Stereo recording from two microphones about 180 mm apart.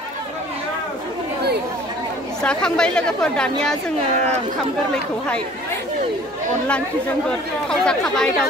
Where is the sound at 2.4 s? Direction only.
5° left (ahead or behind).